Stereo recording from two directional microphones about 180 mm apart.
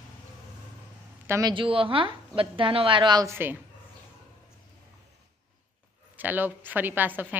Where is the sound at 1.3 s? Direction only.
25° right (ahead or behind).